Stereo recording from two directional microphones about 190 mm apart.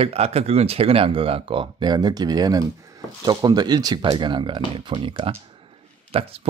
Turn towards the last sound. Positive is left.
turn(degrees=-30)  # may be behind; listen again after turning